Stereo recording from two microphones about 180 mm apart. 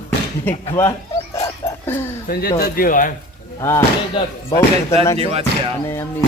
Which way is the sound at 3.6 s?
15° left (ahead or behind).